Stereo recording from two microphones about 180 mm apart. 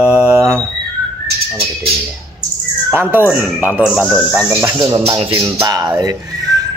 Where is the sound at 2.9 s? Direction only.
10° right (ahead or behind).